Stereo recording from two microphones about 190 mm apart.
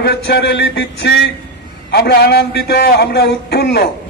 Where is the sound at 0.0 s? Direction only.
60° left (ahead or behind).